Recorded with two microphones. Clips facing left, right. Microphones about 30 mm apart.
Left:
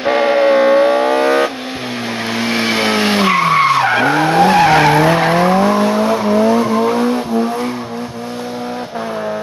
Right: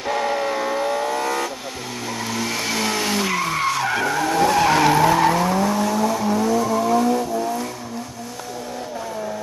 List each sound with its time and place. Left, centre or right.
0.0 s vehicle: left